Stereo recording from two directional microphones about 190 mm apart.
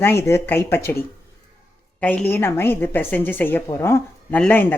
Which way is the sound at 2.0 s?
10° left (ahead or behind).